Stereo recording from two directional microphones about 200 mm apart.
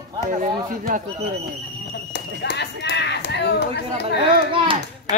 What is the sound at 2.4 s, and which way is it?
Speech, 60° left (ahead or behind).